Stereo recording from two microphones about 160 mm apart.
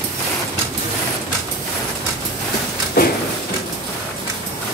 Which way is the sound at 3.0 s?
70° left (ahead or behind).